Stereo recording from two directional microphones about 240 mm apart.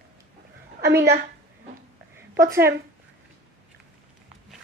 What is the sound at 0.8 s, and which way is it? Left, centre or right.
Speech, right.